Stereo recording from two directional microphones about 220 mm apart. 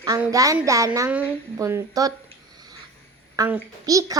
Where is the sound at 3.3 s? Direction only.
15° right (ahead or behind).